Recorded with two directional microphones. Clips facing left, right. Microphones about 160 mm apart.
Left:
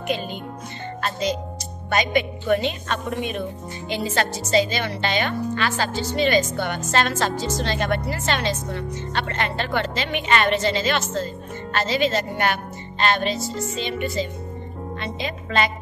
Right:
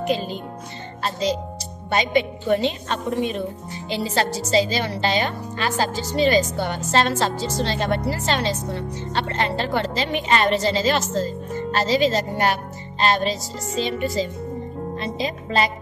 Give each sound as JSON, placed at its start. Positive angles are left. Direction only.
{"t": 0.0, "sound": "a woman's voice", "side_deg": -35}